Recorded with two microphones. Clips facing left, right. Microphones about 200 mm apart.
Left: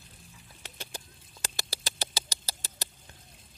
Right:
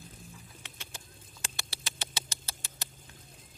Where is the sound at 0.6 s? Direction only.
40° left (ahead or behind).